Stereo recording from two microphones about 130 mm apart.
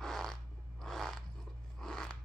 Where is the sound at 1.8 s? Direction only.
5° left (ahead or behind).